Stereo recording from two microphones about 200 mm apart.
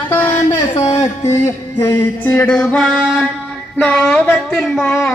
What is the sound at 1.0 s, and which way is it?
Music, 15° left (ahead or behind).